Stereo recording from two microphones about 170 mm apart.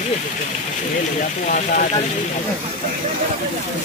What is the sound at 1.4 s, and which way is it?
Speech, 50° left (ahead or behind).